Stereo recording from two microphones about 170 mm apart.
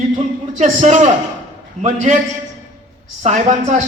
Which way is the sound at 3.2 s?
40° right (ahead or behind).